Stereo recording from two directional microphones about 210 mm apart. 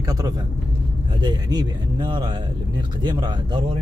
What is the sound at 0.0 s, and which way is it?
Speech, 15° right (ahead or behind).